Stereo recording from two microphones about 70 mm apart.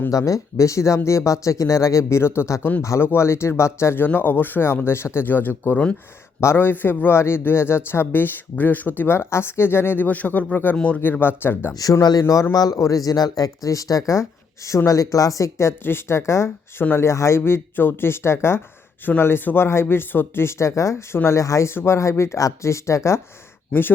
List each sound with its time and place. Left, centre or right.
0.1 s speech: left
10.8 s speech: centre
11.0 s speech: left
11.7 s speech: left
14.8 s speech: left
23.7 s speech: centre